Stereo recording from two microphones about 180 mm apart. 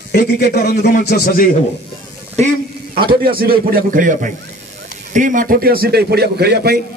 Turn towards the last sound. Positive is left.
turn(degrees=-65)  # may be behind; listen again after turning